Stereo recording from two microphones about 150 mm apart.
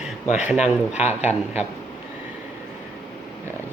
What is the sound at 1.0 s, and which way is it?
Speech, 45° left (ahead or behind).